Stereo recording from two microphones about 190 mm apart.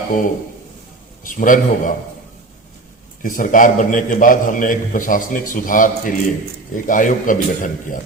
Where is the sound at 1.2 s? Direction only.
45° left (ahead or behind).